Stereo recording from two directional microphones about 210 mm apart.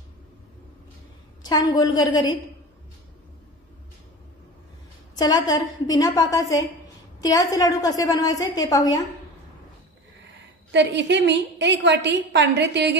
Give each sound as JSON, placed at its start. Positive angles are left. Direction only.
{"t": 1.4, "sound": "a woman's voice", "side_deg": 20}
{"t": 5.1, "sound": "a woman's voice", "side_deg": 20}
{"t": 10.7, "sound": "a woman's voice", "side_deg": -55}